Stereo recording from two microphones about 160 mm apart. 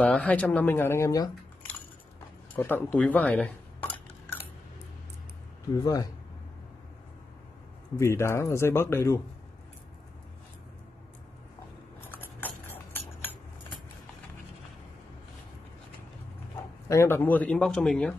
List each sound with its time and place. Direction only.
0.0 s speech: 10° left (ahead or behind)
2.5 s speech: 10° left (ahead or behind)
5.8 s speech: 20° left (ahead or behind)
8.0 s speech: 15° left (ahead or behind)
12.1 s clip-clop: 10° left (ahead or behind)
16.9 s speech: 15° left (ahead or behind)